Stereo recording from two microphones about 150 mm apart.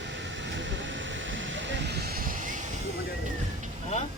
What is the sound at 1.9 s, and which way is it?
Vehicle, 90° right.